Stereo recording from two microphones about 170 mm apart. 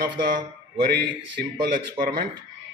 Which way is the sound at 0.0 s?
50° right (ahead or behind).